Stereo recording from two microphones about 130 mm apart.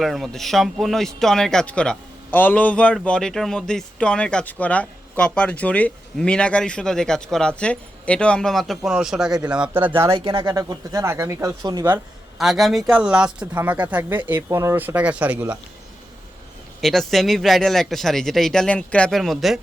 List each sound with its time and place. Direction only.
0.0 s speech: centre (ahead or behind); by 10.1 s 15° right (ahead or behind)
10.1 s speech: 45° right (ahead or behind)
10.5 s speech: 25° right (ahead or behind)
12.4 s speech: centre (ahead or behind)
16.8 s speech: centre (ahead or behind)